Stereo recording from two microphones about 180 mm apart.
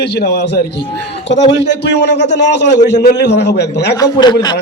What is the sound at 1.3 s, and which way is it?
A man's voice, 75° left (ahead or behind).